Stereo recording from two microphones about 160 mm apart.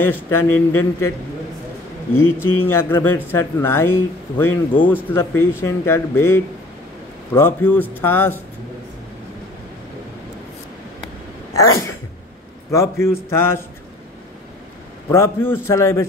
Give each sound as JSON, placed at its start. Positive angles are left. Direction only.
{"t": 0.0, "sound": "speech", "side_deg": 15}
{"t": 2.1, "sound": "speech", "side_deg": 15}
{"t": 12.7, "sound": "speech", "side_deg": 20}
{"t": 15.0, "sound": "speech", "side_deg": 15}